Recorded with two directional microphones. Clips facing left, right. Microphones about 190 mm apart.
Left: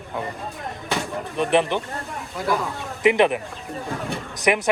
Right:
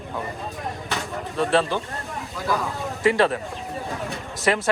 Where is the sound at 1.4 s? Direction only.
20° left (ahead or behind).